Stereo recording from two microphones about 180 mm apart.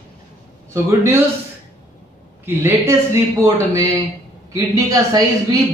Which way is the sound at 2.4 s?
10° right (ahead or behind).